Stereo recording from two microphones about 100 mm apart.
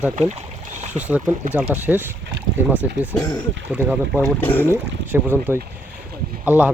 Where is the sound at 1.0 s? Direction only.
15° right (ahead or behind).